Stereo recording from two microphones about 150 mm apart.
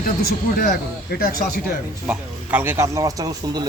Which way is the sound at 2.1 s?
15° right (ahead or behind).